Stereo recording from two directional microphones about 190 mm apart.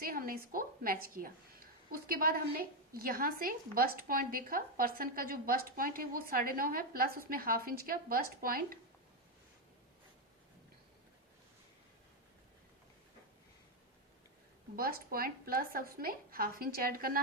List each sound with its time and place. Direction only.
0.0 s a woman's voice: 50° right (ahead or behind)
14.8 s a woman's voice: 50° right (ahead or behind)